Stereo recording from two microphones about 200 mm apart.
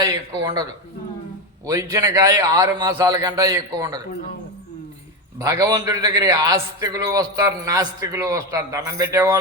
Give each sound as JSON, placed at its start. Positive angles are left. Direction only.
{"t": 0.0, "sound": "speech", "side_deg": -15}
{"t": 1.6, "sound": "a man's voice", "side_deg": -15}
{"t": 5.4, "sound": "a man's voice", "side_deg": -15}